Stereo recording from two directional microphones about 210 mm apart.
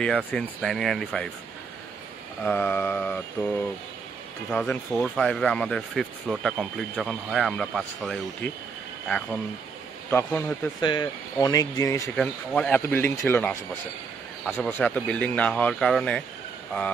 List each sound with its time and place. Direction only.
0.0 s speech: 5° left (ahead or behind)
2.4 s speech: 10° left (ahead or behind)
4.5 s speech: 5° left (ahead or behind)
10.8 s speech: 20° left (ahead or behind)
12.2 s speech: 5° left (ahead or behind)